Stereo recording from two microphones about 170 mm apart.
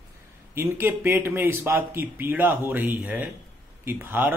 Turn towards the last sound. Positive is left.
turn(degrees=-10)  # may be behind; listen again after turning